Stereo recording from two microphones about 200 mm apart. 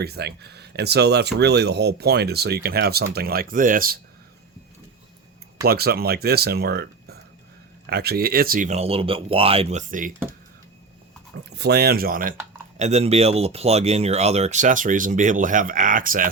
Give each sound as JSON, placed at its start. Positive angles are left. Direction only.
{"t": 0.0, "sound": "speech", "side_deg": -55}
{"t": 5.6, "sound": "speech", "side_deg": -50}
{"t": 11.5, "sound": "speech", "side_deg": -55}
{"t": 12.7, "sound": "speech", "side_deg": -35}